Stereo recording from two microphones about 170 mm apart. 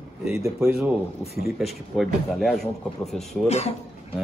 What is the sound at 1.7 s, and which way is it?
Speech, centre (ahead or behind).